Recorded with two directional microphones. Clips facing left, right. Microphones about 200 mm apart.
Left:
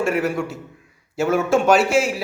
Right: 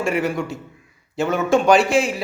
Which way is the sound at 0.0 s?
5° left (ahead or behind).